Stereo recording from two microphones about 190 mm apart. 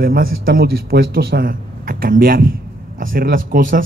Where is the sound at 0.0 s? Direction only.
50° right (ahead or behind).